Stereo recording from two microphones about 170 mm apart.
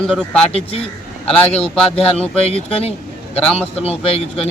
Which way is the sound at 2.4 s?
35° left (ahead or behind).